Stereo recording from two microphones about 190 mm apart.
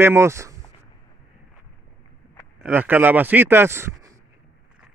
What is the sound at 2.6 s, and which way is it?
Speech, 10° right (ahead or behind).